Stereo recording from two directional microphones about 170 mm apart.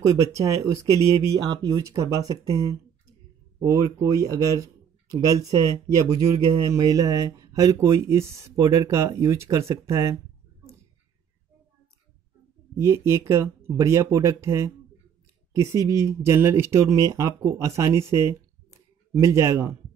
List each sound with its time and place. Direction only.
0.0 s speech: 20° right (ahead or behind)
12.7 s speech: 15° right (ahead or behind)